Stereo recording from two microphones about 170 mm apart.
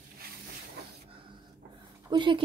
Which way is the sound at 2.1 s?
30° right (ahead or behind).